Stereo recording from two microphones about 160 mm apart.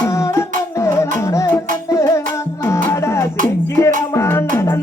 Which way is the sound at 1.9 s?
20° left (ahead or behind).